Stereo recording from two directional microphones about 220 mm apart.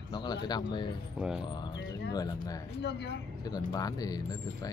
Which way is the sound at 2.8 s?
50° left (ahead or behind).